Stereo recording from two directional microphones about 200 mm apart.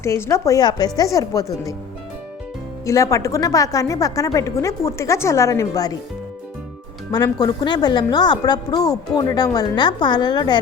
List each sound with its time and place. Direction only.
0.0 s speech: 15° left (ahead or behind)
2.8 s speech: 15° left (ahead or behind)
7.1 s a woman's voice: 20° left (ahead or behind)